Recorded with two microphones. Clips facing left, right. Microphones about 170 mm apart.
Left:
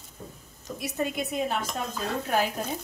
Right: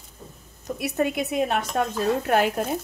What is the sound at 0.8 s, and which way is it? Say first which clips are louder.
A woman's voice: right 5 dB; 70° right (ahead or behind).